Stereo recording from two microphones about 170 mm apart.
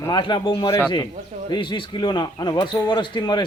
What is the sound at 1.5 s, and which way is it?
Speech, 25° left (ahead or behind).